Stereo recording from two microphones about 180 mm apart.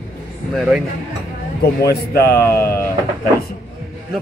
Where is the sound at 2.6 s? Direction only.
10° left (ahead or behind).